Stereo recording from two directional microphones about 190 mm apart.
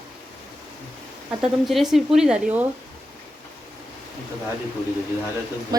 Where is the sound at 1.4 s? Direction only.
Centre (ahead or behind).